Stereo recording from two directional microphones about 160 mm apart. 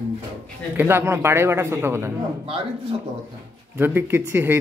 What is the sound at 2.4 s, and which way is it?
Speech, 35° right (ahead or behind).